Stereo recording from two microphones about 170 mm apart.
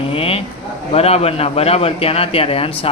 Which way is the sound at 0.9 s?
35° left (ahead or behind).